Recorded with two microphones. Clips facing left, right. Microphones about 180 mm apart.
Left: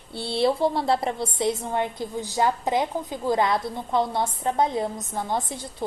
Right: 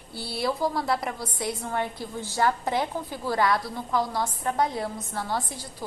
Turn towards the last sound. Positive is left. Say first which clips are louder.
# left 3 dB
turn(degrees=25)  # may be behind; listen again after turning